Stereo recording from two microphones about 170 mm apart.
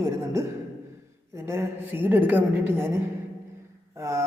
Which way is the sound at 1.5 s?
15° right (ahead or behind).